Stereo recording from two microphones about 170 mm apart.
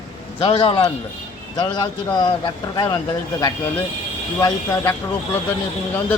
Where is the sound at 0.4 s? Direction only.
30° left (ahead or behind).